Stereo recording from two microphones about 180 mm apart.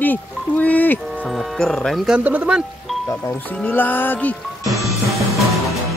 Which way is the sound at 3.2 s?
10° left (ahead or behind).